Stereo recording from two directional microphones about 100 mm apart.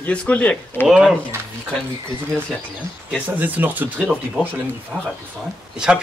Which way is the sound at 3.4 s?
15° right (ahead or behind).